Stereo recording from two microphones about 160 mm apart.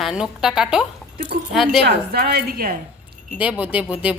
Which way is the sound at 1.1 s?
65° right (ahead or behind).